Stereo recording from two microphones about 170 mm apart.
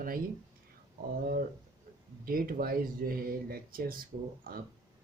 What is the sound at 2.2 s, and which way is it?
Speech, 60° right (ahead or behind).